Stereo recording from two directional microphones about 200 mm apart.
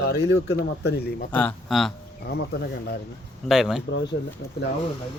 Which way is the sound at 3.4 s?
Centre (ahead or behind).